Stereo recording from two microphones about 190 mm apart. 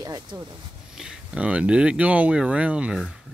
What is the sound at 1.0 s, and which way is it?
Speech, 5° right (ahead or behind).